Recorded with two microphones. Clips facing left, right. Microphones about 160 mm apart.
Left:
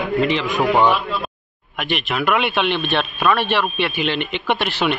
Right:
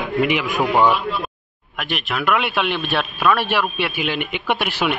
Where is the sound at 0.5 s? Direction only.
Centre (ahead or behind).